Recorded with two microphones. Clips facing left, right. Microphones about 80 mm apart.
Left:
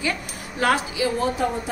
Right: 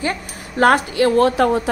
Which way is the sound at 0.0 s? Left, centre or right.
Right.